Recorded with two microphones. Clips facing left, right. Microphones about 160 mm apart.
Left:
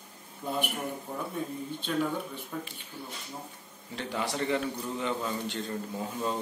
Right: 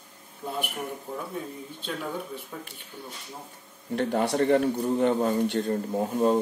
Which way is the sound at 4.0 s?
55° right (ahead or behind).